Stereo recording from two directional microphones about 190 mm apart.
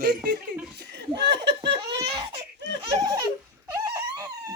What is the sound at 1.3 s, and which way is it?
Giggle, 65° right (ahead or behind).